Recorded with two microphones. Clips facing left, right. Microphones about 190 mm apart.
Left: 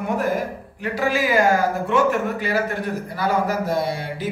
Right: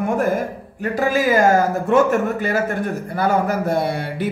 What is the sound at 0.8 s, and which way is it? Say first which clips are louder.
Speech: right 3 dB; 45° right (ahead or behind).